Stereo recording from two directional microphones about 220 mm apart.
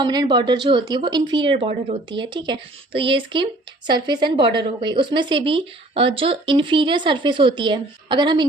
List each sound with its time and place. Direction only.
0.0 s speech: 20° right (ahead or behind)